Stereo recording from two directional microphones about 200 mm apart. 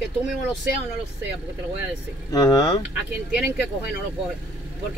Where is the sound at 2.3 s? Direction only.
20° left (ahead or behind).